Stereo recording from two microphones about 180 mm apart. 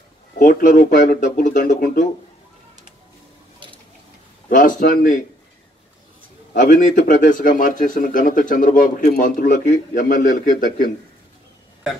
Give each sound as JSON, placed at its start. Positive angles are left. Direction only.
{"t": 0.4, "sound": "a man's voice", "side_deg": 45}
{"t": 3.5, "sound": "a sound", "side_deg": -30}
{"t": 4.5, "sound": "a man's voice", "side_deg": 50}
{"t": 6.5, "sound": "a man's voice", "side_deg": 45}